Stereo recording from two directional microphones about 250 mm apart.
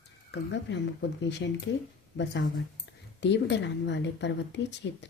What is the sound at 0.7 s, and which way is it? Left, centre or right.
Speech, left.